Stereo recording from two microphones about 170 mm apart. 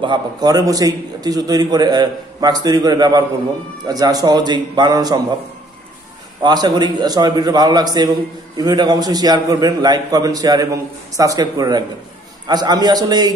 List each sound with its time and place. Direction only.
0.0 s a man's voice: 25° right (ahead or behind)
6.4 s a man's voice: 25° right (ahead or behind)